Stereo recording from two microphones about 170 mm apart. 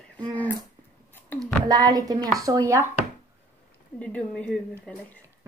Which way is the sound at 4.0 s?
5° left (ahead or behind).